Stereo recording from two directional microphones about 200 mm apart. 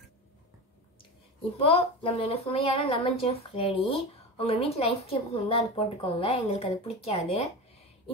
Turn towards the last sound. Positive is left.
turn(degrees=30)  # may be behind; listen again after turning